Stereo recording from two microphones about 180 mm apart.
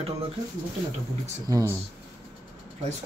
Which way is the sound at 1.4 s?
20° right (ahead or behind).